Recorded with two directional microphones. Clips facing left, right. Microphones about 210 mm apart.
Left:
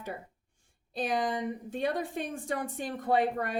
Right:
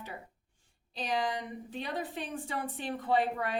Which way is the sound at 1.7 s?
45° left (ahead or behind).